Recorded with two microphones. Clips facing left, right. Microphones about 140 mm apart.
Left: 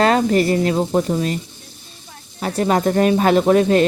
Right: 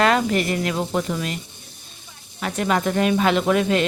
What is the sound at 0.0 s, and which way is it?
Speech, 35° left (ahead or behind).